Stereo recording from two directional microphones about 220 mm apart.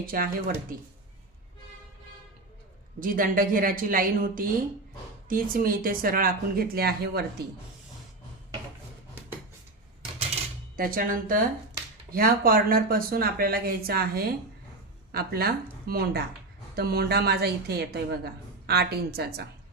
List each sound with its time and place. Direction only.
0.0 s speech: 40° right (ahead or behind)
3.0 s speech: 40° right (ahead or behind)
10.8 s a woman's voice: 40° right (ahead or behind)